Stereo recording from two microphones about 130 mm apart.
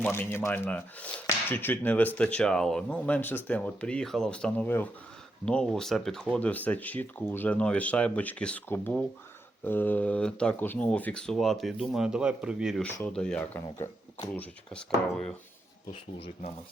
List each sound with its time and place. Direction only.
0.0 s speech: 15° left (ahead or behind); by 12.8 s 5° right (ahead or behind)
12.8 s speech: 5° left (ahead or behind)